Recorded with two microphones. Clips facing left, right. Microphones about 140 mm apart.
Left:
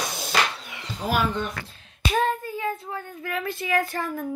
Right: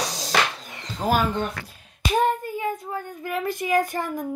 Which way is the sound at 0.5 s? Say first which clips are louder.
Right 2 dB; 40° right (ahead or behind).